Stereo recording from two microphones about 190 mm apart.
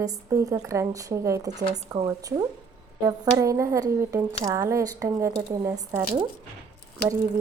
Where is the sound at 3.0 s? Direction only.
15° right (ahead or behind).